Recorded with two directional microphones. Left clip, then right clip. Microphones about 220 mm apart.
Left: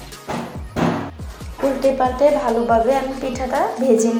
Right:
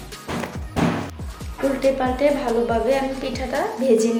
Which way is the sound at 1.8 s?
Centre (ahead or behind).